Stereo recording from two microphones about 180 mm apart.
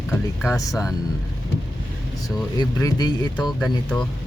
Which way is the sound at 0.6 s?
20° left (ahead or behind).